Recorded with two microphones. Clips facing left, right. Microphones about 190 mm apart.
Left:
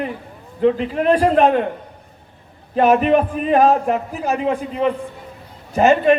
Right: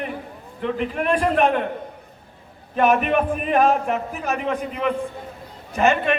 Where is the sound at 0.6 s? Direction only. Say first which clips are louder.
Left 7 dB; 35° left (ahead or behind).